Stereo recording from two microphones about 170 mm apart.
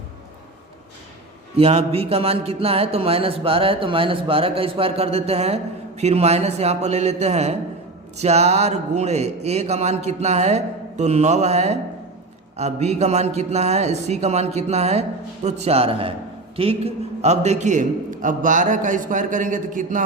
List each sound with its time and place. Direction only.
1.5 s a man's voice: 35° right (ahead or behind)